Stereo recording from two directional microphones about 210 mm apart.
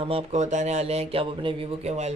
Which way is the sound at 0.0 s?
30° right (ahead or behind).